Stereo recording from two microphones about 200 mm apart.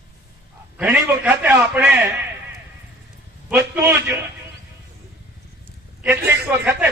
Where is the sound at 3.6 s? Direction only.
10° right (ahead or behind).